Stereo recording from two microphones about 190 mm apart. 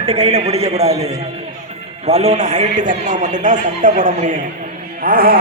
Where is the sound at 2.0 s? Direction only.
35° right (ahead or behind).